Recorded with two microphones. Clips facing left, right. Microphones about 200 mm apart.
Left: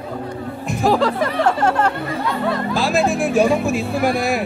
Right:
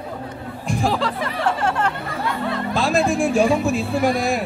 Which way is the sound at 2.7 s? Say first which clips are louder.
Right 1 dB; centre (ahead or behind).